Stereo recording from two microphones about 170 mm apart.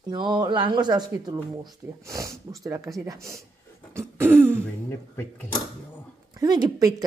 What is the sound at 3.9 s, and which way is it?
Throat clearing, 15° right (ahead or behind).